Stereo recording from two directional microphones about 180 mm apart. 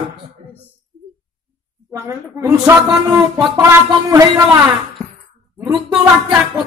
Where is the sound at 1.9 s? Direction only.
15° right (ahead or behind).